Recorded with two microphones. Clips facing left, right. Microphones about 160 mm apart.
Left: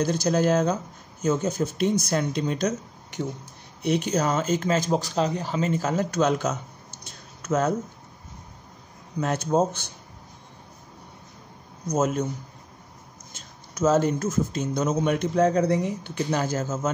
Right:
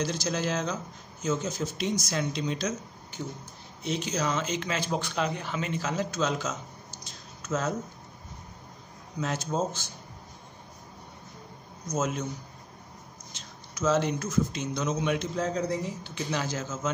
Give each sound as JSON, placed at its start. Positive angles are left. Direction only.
{"t": 0.0, "sound": "a man's voice", "side_deg": 50}
{"t": 9.2, "sound": "speech", "side_deg": 55}
{"t": 11.9, "sound": "a man's voice", "side_deg": 50}
{"t": 13.3, "sound": "a sound", "side_deg": 50}
{"t": 13.7, "sound": "a man's voice", "side_deg": 45}